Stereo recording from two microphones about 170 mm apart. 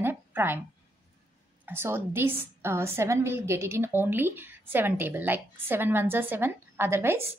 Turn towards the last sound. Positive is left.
turn(degrees=-15)  # may be behind; listen again after turning